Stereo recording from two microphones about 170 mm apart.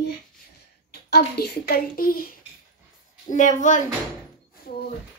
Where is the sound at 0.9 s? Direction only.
70° left (ahead or behind).